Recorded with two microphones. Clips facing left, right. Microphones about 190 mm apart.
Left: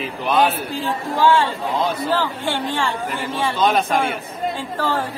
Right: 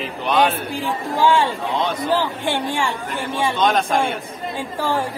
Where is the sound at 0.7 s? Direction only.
15° right (ahead or behind).